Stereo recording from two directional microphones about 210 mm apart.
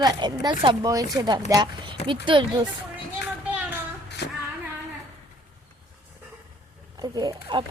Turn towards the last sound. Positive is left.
turn(degrees=-20)  # may be behind; listen again after turning